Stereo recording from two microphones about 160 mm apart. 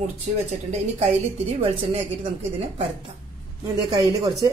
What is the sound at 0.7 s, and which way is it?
A woman's voice, 45° right (ahead or behind).